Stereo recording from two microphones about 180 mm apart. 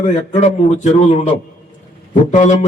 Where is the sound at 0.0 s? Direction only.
40° left (ahead or behind).